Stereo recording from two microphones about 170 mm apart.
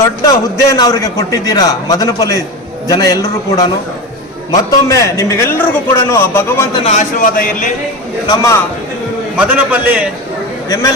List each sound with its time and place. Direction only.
0.0 s a man's voice: 20° left (ahead or behind)
6.8 s speech: 45° left (ahead or behind)
8.3 s a man's voice: 20° left (ahead or behind)
9.4 s a man's voice: 10° right (ahead or behind)